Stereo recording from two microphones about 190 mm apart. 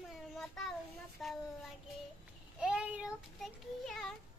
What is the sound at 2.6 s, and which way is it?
Child singing, 5° right (ahead or behind).